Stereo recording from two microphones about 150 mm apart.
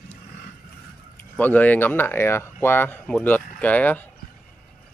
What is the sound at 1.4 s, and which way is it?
Speech, 10° left (ahead or behind).